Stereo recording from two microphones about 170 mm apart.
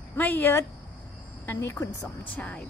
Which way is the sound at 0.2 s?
10° left (ahead or behind).